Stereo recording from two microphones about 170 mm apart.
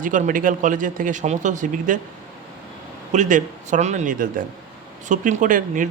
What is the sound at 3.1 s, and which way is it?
Speech, 45° right (ahead or behind).